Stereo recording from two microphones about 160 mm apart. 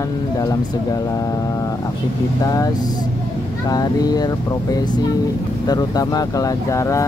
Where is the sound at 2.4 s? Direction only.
25° left (ahead or behind).